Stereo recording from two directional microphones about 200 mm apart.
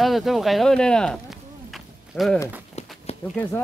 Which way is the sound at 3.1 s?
30° left (ahead or behind).